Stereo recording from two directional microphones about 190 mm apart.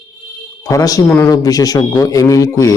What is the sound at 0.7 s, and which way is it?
A man's voice, 15° left (ahead or behind).